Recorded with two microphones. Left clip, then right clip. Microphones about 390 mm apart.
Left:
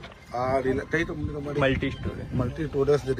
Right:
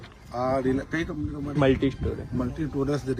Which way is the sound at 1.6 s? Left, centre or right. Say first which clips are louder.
Right 3 dB; right.